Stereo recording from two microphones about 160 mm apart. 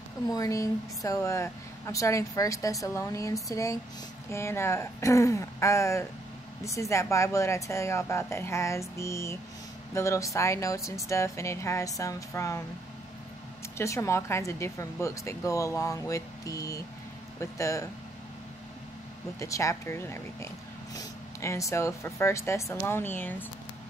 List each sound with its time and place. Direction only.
0.3 s a woman's voice: 20° left (ahead or behind)
13.7 s a woman's voice: 15° left (ahead or behind)
19.4 s speech: 20° left (ahead or behind)